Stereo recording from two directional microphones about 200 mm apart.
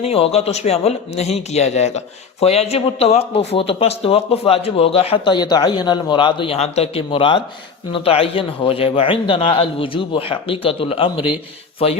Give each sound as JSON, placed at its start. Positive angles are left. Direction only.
{"t": 0.0, "sound": "speech", "side_deg": 30}